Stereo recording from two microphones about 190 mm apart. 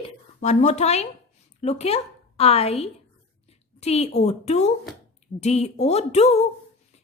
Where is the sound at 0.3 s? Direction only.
35° left (ahead or behind).